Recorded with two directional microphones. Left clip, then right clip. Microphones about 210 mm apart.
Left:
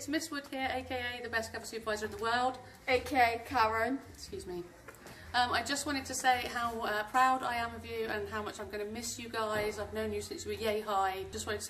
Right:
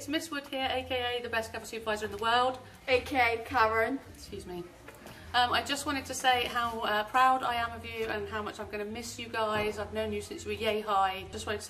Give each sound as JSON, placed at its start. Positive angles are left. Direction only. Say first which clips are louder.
{"t": 0.0, "sound": "a woman's voice", "louder": "right 2 dB", "side_deg": 0}
{"t": 2.9, "sound": "a woman's voice", "louder": "right 2 dB", "side_deg": 30}
{"t": 5.3, "sound": "a woman's voice", "louder": "right 3 dB", "side_deg": 0}